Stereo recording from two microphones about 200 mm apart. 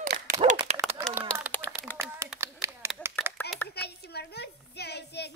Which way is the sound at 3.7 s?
55° left (ahead or behind).